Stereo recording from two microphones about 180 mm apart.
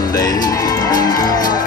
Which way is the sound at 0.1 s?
20° left (ahead or behind).